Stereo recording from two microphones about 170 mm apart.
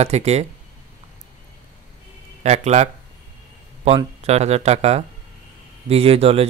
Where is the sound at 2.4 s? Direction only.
40° right (ahead or behind).